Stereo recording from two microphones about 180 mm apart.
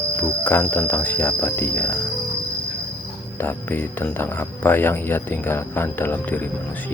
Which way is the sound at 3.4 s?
10° left (ahead or behind).